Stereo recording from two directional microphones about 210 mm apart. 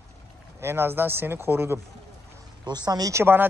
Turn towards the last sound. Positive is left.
turn(degrees=-10)  # may be behind; listen again after turning